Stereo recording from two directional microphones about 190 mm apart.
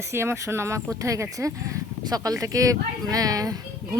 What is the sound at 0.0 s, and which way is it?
Speech, 15° right (ahead or behind).